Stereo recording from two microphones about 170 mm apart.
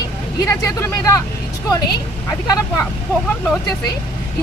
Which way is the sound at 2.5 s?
20° left (ahead or behind).